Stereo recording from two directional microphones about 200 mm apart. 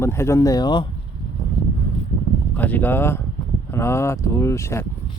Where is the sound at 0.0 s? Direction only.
15° left (ahead or behind).